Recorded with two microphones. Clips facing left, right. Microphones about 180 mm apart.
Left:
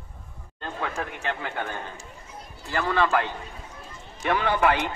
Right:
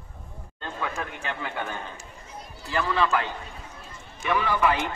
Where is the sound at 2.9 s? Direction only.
55° left (ahead or behind).